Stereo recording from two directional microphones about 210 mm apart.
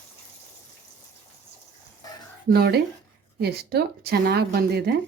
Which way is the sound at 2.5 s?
50° right (ahead or behind).